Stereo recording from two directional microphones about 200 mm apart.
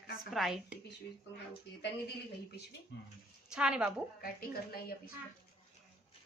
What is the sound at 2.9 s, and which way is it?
Speech, 60° left (ahead or behind).